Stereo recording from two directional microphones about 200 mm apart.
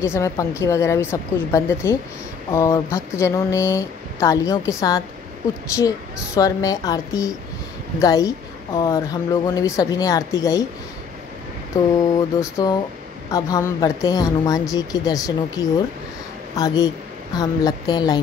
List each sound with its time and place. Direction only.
0.0 s speech: 15° left (ahead or behind)
11.7 s a woman's voice: 15° left (ahead or behind)